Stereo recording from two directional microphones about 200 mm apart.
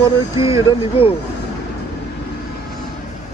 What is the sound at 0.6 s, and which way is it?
Speech, 30° left (ahead or behind).